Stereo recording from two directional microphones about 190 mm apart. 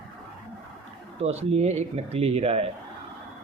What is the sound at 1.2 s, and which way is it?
Speech, 35° right (ahead or behind).